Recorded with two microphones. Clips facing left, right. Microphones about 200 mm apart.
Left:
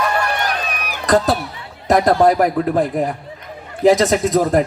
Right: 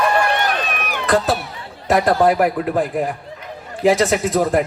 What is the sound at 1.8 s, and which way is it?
Chatter, 40° left (ahead or behind).